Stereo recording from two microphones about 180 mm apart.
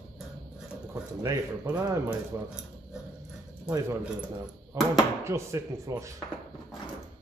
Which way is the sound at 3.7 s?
15° right (ahead or behind).